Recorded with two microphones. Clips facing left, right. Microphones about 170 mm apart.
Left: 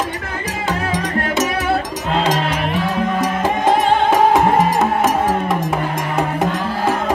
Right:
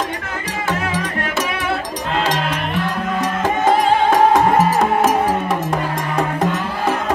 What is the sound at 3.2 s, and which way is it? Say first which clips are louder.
Music: right 2 dB; centre (ahead or behind).